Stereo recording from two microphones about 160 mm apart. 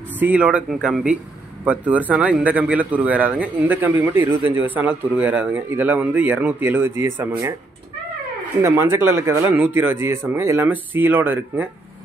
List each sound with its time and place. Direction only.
0.2 s speech: 10° right (ahead or behind)
8.6 s speech: 15° right (ahead or behind)